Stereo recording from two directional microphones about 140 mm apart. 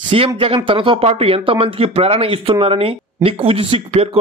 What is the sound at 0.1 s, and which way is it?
A man's voice, 45° right (ahead or behind).